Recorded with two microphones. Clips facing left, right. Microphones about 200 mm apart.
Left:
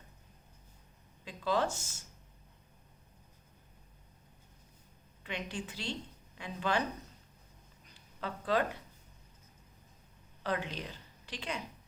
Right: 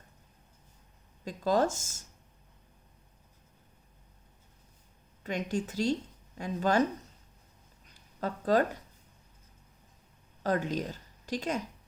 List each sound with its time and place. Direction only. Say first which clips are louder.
1.2 s speech: right 5 dB; 45° right (ahead or behind)
5.2 s a woman's voice: right 8 dB; 45° right (ahead or behind)
8.2 s speech: right 5 dB; 40° right (ahead or behind)
10.4 s a woman's voice: right 6 dB; 45° right (ahead or behind)